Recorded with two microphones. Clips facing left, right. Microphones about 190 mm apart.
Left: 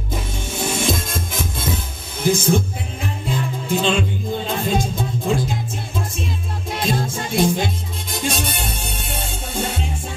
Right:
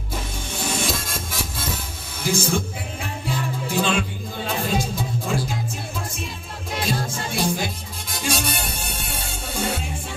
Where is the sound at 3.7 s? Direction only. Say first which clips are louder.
Left 4 dB; 20° left (ahead or behind).